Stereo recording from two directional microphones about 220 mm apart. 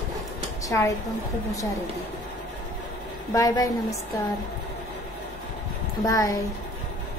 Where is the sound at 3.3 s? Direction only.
15° left (ahead or behind).